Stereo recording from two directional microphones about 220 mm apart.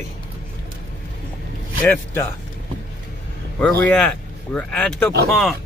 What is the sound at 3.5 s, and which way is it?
Speech, 5° left (ahead or behind).